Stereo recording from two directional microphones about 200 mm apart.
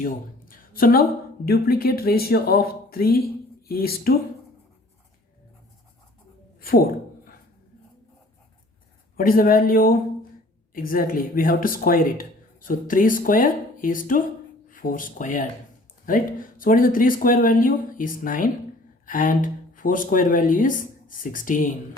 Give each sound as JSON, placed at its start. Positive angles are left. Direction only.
{"t": 0.0, "sound": "speech", "side_deg": 45}
{"t": 6.6, "sound": "speech", "side_deg": 50}
{"t": 9.1, "sound": "speech", "side_deg": 45}